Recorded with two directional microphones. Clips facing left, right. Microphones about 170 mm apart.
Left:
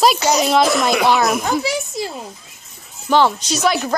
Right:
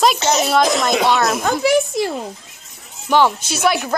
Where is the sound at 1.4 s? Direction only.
55° right (ahead or behind).